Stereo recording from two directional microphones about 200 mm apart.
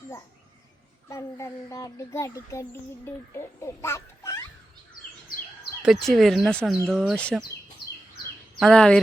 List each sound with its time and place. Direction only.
1.0 s speech: 15° left (ahead or behind)
5.8 s speech: centre (ahead or behind)
8.5 s speech: centre (ahead or behind)